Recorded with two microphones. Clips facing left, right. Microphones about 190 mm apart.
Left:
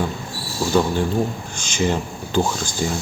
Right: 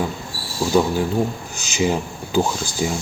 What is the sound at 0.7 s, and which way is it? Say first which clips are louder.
Speech: right 1 dB; 5° right (ahead or behind).